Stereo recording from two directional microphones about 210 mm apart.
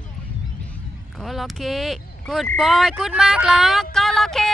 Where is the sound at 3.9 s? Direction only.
Centre (ahead or behind).